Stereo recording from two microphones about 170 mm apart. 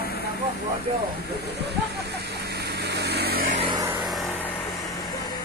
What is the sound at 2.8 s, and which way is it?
Vehicle, 75° right (ahead or behind).